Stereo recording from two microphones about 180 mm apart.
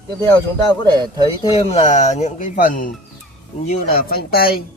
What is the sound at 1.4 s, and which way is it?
Speech, 35° left (ahead or behind).